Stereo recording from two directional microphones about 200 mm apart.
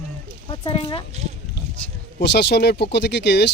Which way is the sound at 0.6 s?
25° left (ahead or behind).